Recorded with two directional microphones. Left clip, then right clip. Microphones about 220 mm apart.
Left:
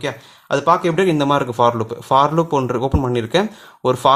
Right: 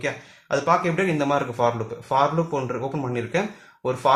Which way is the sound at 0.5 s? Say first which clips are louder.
Left 5 dB; 40° left (ahead or behind).